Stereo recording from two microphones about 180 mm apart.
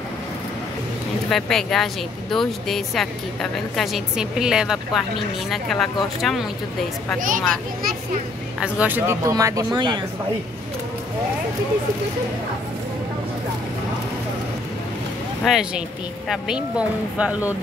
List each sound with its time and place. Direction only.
1.3 s a woman's voice: centre (ahead or behind)
7.2 s speech: 45° right (ahead or behind)
8.5 s speech: 10° right (ahead or behind); by 10.0 s 25° right (ahead or behind)
15.4 s a woman's voice: centre (ahead or behind)